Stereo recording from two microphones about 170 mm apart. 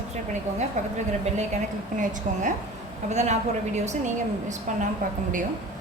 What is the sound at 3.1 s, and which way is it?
Speech, 45° right (ahead or behind).